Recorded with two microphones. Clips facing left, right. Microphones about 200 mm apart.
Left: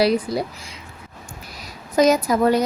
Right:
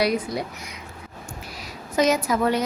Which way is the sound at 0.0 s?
30° left (ahead or behind).